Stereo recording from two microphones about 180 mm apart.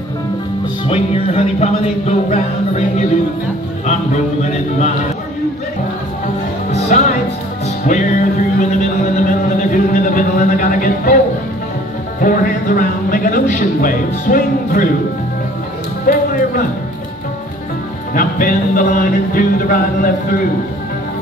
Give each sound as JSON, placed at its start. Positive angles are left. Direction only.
{"t": 0.8, "sound": "music", "side_deg": 35}
{"t": 6.9, "sound": "speech", "side_deg": 45}
{"t": 7.6, "sound": "music", "side_deg": 45}
{"t": 12.2, "sound": "speech", "side_deg": 50}
{"t": 16.1, "sound": "music", "side_deg": 50}
{"t": 18.1, "sound": "speech", "side_deg": 50}